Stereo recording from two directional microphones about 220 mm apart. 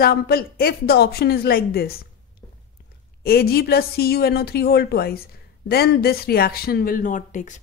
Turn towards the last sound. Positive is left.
turn(degrees=35)  # may be behind; listen again after turning